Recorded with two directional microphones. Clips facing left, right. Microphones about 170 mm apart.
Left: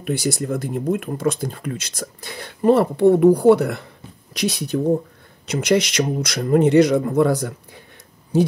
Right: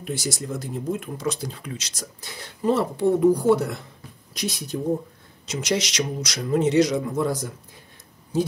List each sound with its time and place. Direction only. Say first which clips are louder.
0.0 s speech: left 7 dB; 60° left (ahead or behind)
5.5 s speech: left 7 dB; 55° left (ahead or behind)